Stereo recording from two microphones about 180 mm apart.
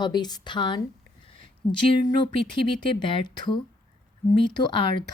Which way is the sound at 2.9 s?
25° left (ahead or behind).